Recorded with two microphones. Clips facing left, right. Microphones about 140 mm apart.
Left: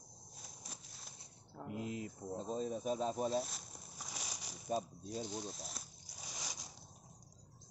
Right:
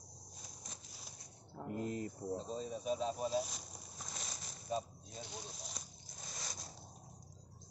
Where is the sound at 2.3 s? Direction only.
50° left (ahead or behind).